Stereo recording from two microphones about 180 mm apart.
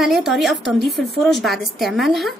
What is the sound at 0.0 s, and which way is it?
A woman's voice, centre (ahead or behind).